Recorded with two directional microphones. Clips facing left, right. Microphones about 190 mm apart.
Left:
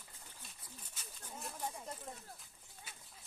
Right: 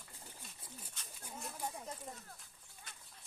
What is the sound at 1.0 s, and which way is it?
Speech, 5° left (ahead or behind).